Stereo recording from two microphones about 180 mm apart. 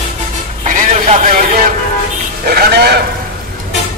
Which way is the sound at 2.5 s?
60° right (ahead or behind).